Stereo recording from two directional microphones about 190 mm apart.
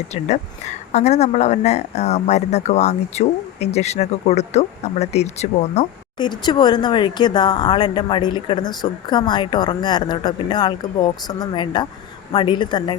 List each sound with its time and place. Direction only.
0.1 s speech: 35° left (ahead or behind)
6.1 s speech: 25° left (ahead or behind)